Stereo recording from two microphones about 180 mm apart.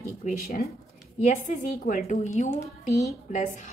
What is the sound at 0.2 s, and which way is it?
Speech, 45° left (ahead or behind).